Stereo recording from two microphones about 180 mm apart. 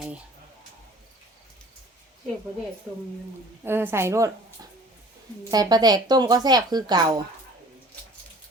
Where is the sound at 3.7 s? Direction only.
10° right (ahead or behind).